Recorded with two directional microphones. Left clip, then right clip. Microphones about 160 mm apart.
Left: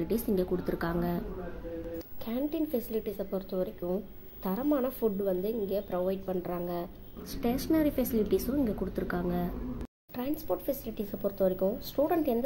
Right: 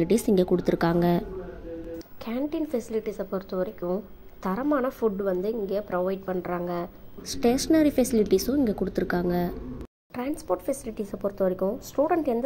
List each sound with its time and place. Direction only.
0.0 s a woman's voice: 45° right (ahead or behind)
2.2 s a woman's voice: 15° right (ahead or behind)
7.2 s a woman's voice: 35° right (ahead or behind)
10.1 s a woman's voice: 20° right (ahead or behind)